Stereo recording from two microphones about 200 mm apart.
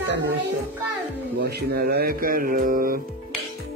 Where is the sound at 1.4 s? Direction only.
55° right (ahead or behind).